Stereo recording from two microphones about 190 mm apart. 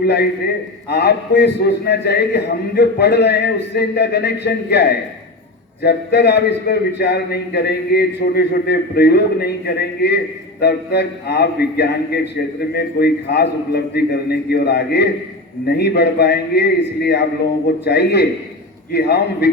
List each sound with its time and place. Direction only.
0.0 s a man's voice: 60° left (ahead or behind)